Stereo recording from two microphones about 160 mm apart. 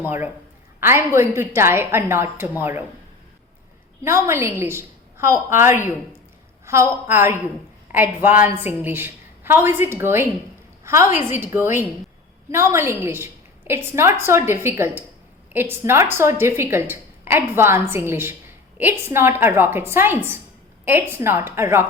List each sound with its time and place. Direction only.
0.0 s a woman's voice: 15° right (ahead or behind)
4.0 s a woman's voice: 15° right (ahead or behind)